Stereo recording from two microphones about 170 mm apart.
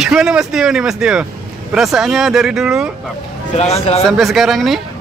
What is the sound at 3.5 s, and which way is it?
Speech, 40° left (ahead or behind).